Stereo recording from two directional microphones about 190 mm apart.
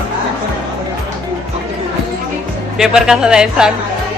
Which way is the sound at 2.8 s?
5° right (ahead or behind).